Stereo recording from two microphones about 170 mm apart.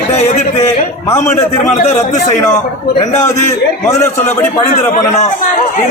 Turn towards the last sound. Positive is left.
turn(degrees=15)  # may be behind; listen again after turning